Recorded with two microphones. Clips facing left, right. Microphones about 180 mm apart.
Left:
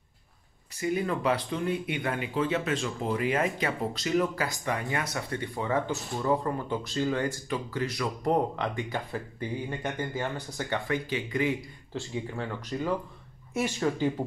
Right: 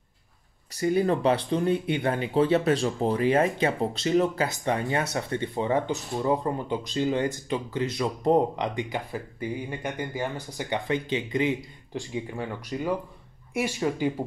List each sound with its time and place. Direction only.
0.7 s speech: 35° right (ahead or behind); by 14.2 s 10° right (ahead or behind)